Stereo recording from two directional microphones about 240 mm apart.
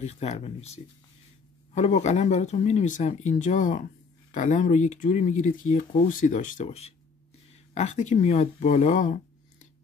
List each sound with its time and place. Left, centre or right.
0.0 s speech: left